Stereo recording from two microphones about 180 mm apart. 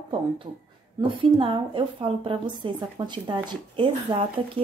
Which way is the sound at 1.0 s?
30° right (ahead or behind).